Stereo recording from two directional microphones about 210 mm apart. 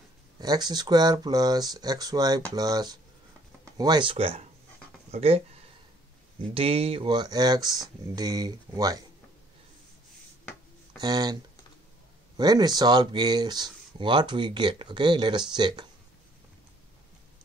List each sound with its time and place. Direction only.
0.4 s speech: 20° right (ahead or behind)
6.5 s speech: 25° right (ahead or behind)
11.0 s speech: 20° right (ahead or behind)
12.4 s speech: 20° right (ahead or behind)